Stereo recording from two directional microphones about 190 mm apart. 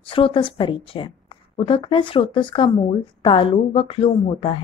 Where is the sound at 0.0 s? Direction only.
30° left (ahead or behind).